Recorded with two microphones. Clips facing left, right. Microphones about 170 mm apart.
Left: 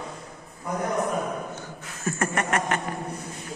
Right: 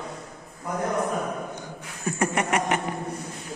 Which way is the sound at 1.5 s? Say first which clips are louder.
Right 1 dB; 15° right (ahead or behind).